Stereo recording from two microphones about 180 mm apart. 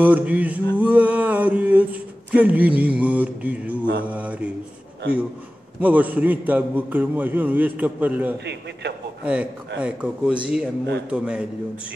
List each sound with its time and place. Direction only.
0.0 s a man's voice: 10° right (ahead or behind)
0.7 s a sound: 10° right (ahead or behind)
4.0 s a man's voice: 5° right (ahead or behind)
5.8 s a man's voice: 10° right (ahead or behind)
8.5 s a man's voice: 70° right (ahead or behind)
9.2 s a man's voice: 5° right (ahead or behind)